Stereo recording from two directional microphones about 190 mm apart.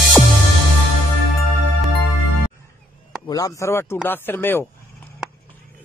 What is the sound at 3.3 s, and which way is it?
A man's voice, 20° left (ahead or behind).